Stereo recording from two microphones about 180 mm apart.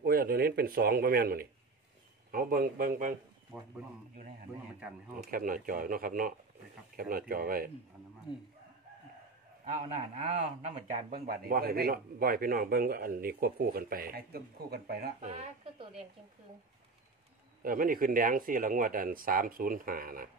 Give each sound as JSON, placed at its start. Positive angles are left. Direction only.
{"t": 0.0, "sound": "a man's voice", "side_deg": -55}
{"t": 3.5, "sound": "speech", "side_deg": -5}
{"t": 5.2, "sound": "a man's voice", "side_deg": -50}
{"t": 8.3, "sound": "speech", "side_deg": 25}
{"t": 9.7, "sound": "a man's voice", "side_deg": -40}
{"t": 15.1, "sound": "speech", "side_deg": -35}
{"t": 17.6, "sound": "a man's voice", "side_deg": -50}